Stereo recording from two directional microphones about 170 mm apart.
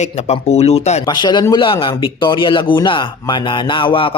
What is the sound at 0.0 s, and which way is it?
Speech, 40° left (ahead or behind).